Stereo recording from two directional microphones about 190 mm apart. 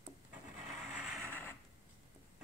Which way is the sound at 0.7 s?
Centre (ahead or behind).